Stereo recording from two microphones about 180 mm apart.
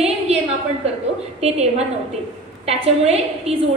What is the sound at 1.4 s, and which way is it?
Speech, 35° right (ahead or behind).